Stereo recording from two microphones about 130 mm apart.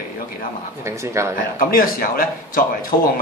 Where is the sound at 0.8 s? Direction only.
20° right (ahead or behind).